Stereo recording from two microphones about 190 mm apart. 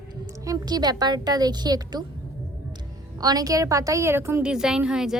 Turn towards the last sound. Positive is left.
turn(degrees=-5)  # may be behind; listen again after turning